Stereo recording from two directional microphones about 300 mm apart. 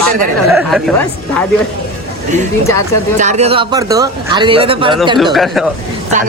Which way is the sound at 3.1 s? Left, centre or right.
Right.